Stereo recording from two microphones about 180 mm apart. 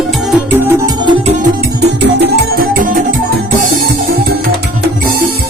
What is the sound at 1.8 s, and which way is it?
Music, 70° right (ahead or behind).